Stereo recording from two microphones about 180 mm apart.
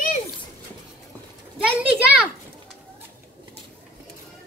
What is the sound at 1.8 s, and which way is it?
Speech, 10° right (ahead or behind).